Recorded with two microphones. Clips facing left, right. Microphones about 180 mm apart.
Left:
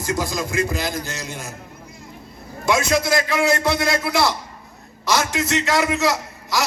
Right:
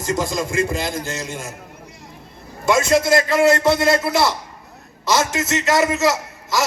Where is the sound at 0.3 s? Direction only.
50° right (ahead or behind).